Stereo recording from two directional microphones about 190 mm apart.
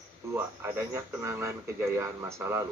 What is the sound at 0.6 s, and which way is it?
Speech, 10° right (ahead or behind).